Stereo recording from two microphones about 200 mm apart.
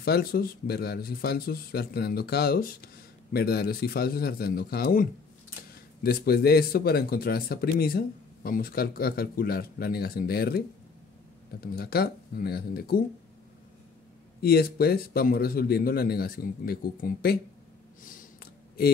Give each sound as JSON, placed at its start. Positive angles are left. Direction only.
{"t": 0.0, "sound": "speech", "side_deg": 50}
{"t": 6.0, "sound": "speech", "side_deg": 50}
{"t": 11.6, "sound": "speech", "side_deg": 50}
{"t": 14.4, "sound": "speech", "side_deg": 50}
{"t": 18.0, "sound": "a sound", "side_deg": 45}